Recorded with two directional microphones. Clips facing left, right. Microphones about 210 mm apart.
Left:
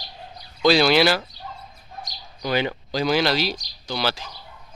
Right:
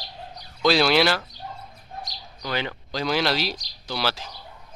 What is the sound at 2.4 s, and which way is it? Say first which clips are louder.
Speech: left 6 dB; 15° left (ahead or behind).